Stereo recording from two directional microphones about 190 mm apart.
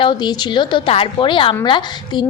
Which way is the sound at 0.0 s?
25° left (ahead or behind).